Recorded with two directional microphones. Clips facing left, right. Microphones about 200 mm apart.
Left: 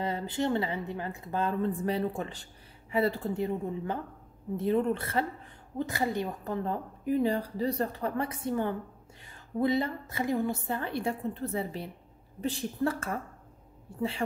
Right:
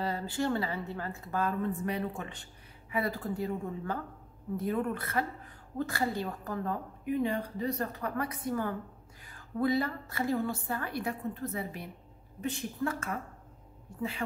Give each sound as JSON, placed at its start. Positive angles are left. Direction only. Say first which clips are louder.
{"t": 0.0, "sound": "a woman's voice", "louder": "left 2 dB", "side_deg": 20}